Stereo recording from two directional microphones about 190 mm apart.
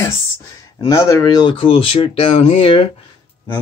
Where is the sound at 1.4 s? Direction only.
30° left (ahead or behind).